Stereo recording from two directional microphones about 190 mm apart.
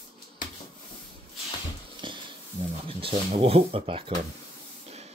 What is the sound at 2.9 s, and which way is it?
Speech, 30° right (ahead or behind).